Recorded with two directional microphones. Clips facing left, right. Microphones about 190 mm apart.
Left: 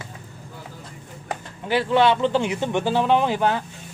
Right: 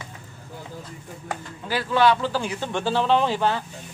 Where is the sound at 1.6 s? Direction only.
25° left (ahead or behind).